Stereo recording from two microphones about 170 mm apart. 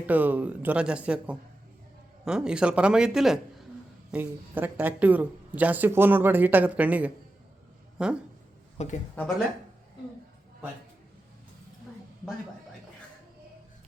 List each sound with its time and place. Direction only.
0.0 s speech: 10° right (ahead or behind)
8.8 s speech: 45° left (ahead or behind)